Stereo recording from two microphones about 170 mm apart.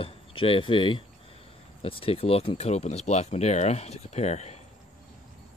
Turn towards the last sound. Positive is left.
turn(degrees=40)  # may be behind; listen again after turning